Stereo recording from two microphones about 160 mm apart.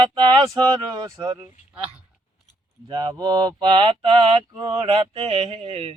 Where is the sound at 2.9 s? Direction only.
30° right (ahead or behind).